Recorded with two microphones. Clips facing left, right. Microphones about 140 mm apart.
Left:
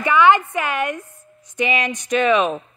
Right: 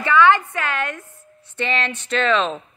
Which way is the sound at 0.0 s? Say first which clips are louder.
Left 1 dB; 15° left (ahead or behind).